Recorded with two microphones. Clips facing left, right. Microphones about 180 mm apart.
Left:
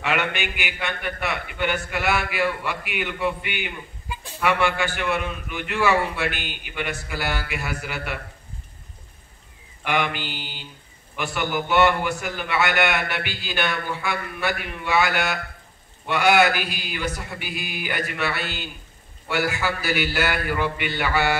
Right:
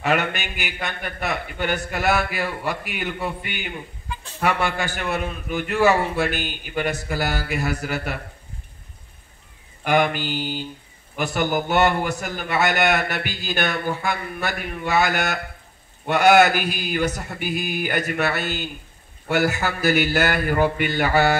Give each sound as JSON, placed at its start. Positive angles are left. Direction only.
{"t": 0.0, "sound": "a man's voice", "side_deg": -40}
{"t": 4.1, "sound": "a sound", "side_deg": 10}
{"t": 4.4, "sound": "a man's voice", "side_deg": -40}
{"t": 9.8, "sound": "a man's voice", "side_deg": -45}